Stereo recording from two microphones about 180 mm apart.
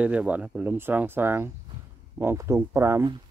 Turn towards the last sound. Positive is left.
turn(degrees=-15)  # may be behind; listen again after turning